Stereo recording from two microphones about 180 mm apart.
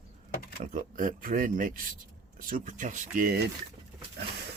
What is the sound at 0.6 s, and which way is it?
Speech, 45° right (ahead or behind).